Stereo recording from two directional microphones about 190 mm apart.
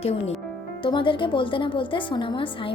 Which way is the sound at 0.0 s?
35° left (ahead or behind).